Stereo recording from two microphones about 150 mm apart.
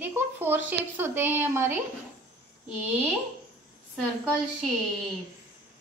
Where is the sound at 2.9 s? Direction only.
5° right (ahead or behind).